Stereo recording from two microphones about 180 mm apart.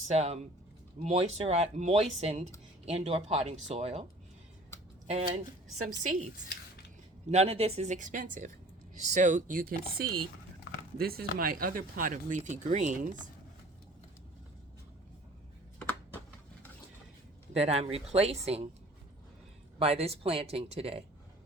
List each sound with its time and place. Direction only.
0.1 s speech: 35° right (ahead or behind)
5.0 s speech: 40° right (ahead or behind)
7.3 s speech: 35° right (ahead or behind)
17.5 s speech: 35° right (ahead or behind)
19.8 s speech: 35° right (ahead or behind)